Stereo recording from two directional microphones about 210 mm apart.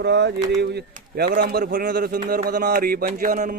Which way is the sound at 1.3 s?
45° right (ahead or behind).